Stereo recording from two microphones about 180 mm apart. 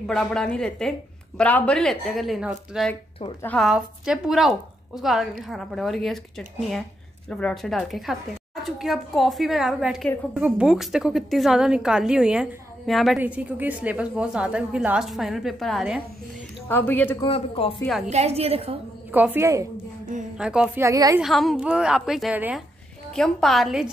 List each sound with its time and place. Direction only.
0.0 s a woman's voice: 5° left (ahead or behind)
16.6 s a woman's voice: 10° left (ahead or behind)
17.2 s a man's voice: 30° left (ahead or behind)
17.8 s a woman's voice: centre (ahead or behind)
18.1 s a woman's voice: 35° right (ahead or behind)
19.1 s a woman's voice: 10° right (ahead or behind)
20.3 s a woman's voice: 5° right (ahead or behind)
21.2 s a woman's voice: centre (ahead or behind)